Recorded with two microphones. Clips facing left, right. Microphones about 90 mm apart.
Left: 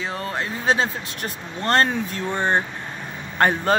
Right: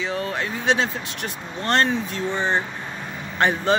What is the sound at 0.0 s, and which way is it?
Speech, 35° left (ahead or behind).